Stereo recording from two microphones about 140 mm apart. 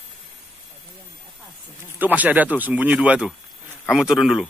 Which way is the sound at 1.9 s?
10° right (ahead or behind).